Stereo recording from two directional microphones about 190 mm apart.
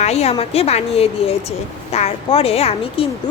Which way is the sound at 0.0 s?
35° left (ahead or behind).